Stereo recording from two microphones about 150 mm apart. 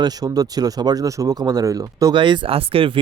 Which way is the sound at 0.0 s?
25° right (ahead or behind).